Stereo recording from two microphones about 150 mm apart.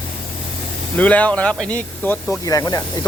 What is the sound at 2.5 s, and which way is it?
Speech, 25° left (ahead or behind).